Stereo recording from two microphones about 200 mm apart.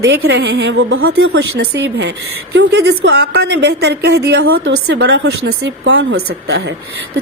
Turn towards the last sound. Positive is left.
turn(degrees=-60)  # may be behind; listen again after turning